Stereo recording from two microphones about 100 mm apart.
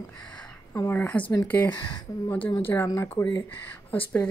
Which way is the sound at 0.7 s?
25° left (ahead or behind).